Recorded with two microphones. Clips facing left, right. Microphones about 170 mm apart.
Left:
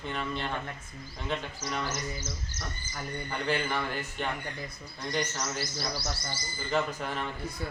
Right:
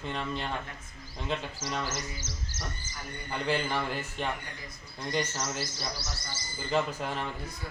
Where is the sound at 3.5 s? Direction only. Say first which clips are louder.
Right 1 dB; 5° right (ahead or behind).